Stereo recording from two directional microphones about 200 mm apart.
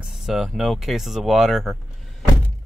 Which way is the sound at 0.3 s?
Centre (ahead or behind).